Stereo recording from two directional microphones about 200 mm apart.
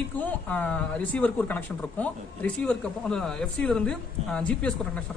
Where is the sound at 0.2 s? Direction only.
10° left (ahead or behind).